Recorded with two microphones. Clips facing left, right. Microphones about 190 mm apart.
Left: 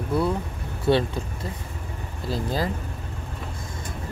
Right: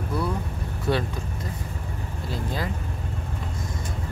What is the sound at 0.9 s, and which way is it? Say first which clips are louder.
Speech: left 5 dB; 30° left (ahead or behind).